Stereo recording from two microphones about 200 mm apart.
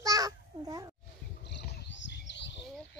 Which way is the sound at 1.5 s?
65° left (ahead or behind).